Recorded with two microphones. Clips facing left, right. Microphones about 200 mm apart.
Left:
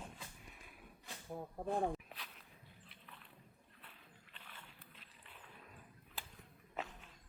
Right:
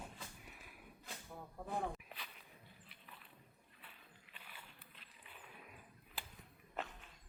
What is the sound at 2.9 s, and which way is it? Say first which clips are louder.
Biting: left 1 dB; 5° right (ahead or behind).